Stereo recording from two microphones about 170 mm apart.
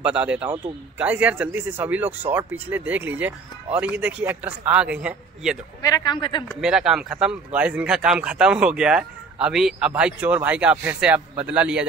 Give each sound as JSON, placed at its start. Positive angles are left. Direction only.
{"t": 0.0, "sound": "speech", "side_deg": -5}
{"t": 5.8, "sound": "a man's voice", "side_deg": 20}
{"t": 6.6, "sound": "speech", "side_deg": -5}